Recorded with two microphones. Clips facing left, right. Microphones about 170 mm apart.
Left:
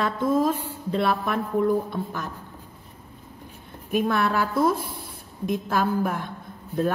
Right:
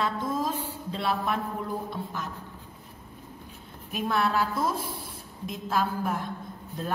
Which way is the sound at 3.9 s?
55° left (ahead or behind).